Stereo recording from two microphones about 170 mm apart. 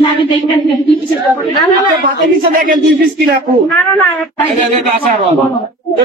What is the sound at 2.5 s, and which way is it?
Speech, 55° right (ahead or behind).